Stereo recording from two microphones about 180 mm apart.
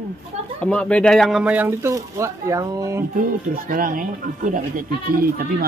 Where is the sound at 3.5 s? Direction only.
50° right (ahead or behind).